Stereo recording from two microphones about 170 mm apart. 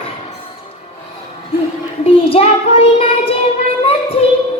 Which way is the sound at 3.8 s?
35° left (ahead or behind).